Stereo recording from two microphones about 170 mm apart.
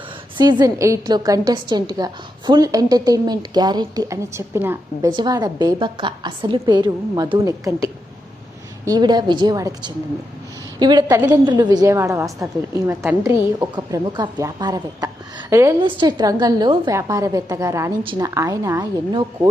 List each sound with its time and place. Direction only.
0.3 s a woman's voice: 25° right (ahead or behind)
5.0 s a woman's voice: 25° right (ahead or behind)
15.8 s a woman's voice: 25° right (ahead or behind)
18.0 s a woman's voice: 30° right (ahead or behind)
18.3 s a woman's voice: 20° right (ahead or behind)